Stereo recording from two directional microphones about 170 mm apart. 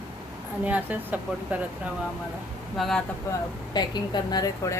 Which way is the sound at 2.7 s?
Centre (ahead or behind).